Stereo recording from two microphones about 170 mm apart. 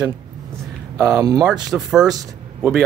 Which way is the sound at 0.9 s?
20° right (ahead or behind).